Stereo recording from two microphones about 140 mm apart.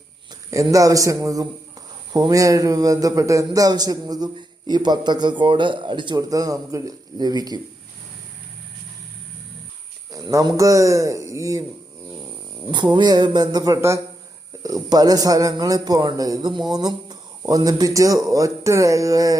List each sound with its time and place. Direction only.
0.5 s a man's voice: 25° right (ahead or behind)
10.1 s a man's voice: 25° right (ahead or behind)
12.7 s a man's voice: 30° right (ahead or behind)